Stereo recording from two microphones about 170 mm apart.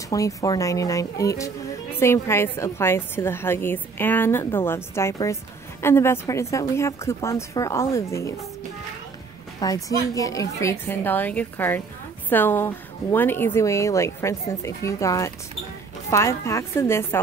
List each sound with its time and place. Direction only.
0.1 s a woman's voice: 20° left (ahead or behind)
9.6 s a woman's voice: 20° left (ahead or behind)